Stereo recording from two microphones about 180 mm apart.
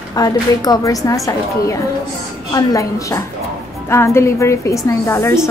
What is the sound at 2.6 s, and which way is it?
A woman's voice, 20° left (ahead or behind).